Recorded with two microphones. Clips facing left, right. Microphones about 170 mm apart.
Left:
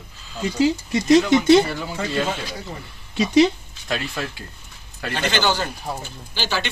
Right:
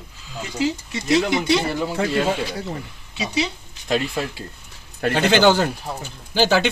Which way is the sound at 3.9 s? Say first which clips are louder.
Right 4 dB; 20° right (ahead or behind).